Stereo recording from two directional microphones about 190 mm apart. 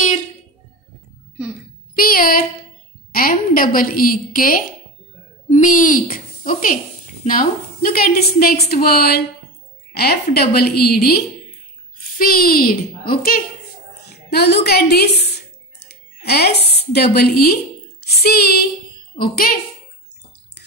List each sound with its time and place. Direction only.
2.0 s a sound: 50° left (ahead or behind)
3.1 s a woman's voice: 50° left (ahead or behind)
10.3 s a woman's voice: 55° left (ahead or behind)
18.0 s female singing: 55° left (ahead or behind)
19.1 s a woman's voice: 50° left (ahead or behind)